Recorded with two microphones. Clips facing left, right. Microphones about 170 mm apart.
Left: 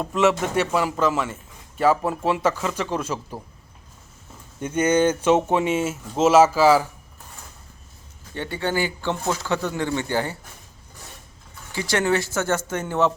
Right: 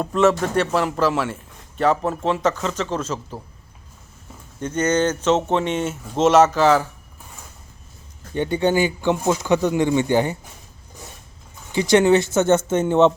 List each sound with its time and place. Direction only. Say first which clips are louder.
0.0 s speech: right 3 dB; centre (ahead or behind)
4.6 s speech: left 1 dB; 10° left (ahead or behind)
8.4 s speech: right 6 dB; 20° right (ahead or behind)
11.7 s speech: right 7 dB; 20° right (ahead or behind)